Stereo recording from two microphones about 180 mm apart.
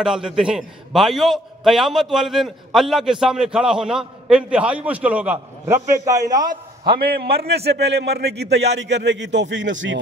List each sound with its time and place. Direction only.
0.0 s a man's voice: 5° right (ahead or behind)
6.0 s a man's voice: 20° right (ahead or behind)
6.9 s a man's voice: 60° right (ahead or behind); by 9.9 s 90° right